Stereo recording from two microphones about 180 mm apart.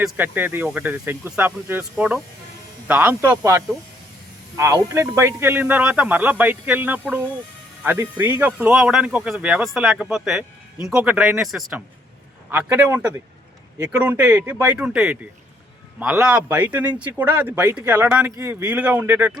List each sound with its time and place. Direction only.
0.0 s speech: 10° right (ahead or behind)
14.0 s speech: 10° right (ahead or behind)